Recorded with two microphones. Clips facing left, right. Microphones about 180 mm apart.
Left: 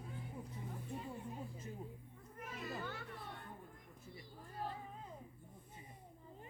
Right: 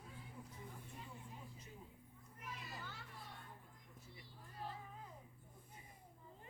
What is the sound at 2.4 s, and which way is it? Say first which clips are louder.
Children playing: left 7 dB; 55° left (ahead or behind).